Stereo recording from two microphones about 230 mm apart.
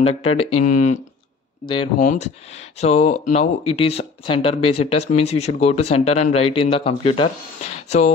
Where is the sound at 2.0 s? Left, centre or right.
Left.